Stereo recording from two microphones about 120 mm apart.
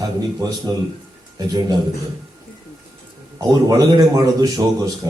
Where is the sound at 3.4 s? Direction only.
30° right (ahead or behind).